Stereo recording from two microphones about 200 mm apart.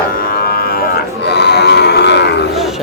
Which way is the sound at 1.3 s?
55° left (ahead or behind).